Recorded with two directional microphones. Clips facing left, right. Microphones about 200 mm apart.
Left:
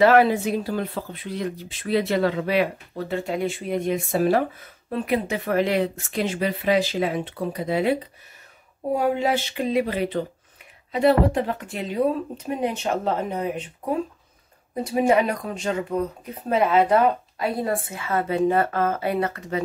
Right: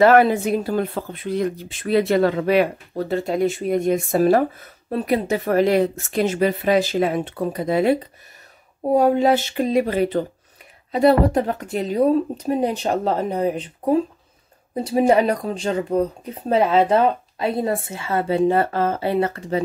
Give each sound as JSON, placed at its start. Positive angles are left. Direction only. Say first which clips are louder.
{"t": 0.0, "sound": "speech", "louder": "right 2 dB", "side_deg": -50}
{"t": 14.8, "sound": "speech", "louder": "right 3 dB", "side_deg": -30}